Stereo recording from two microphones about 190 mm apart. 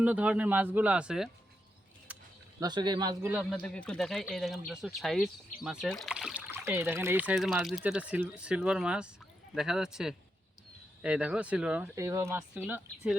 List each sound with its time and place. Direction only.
0.0 s speech: 5° right (ahead or behind)
2.1 s a sound: 5° right (ahead or behind)
2.6 s speech: 20° right (ahead or behind)
3.6 s speech: 5° left (ahead or behind)